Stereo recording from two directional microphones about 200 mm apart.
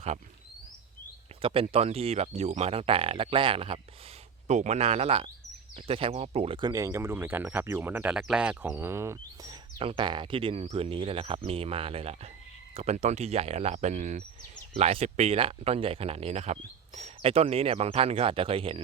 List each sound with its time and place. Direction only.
1.4 s speech: 30° right (ahead or behind)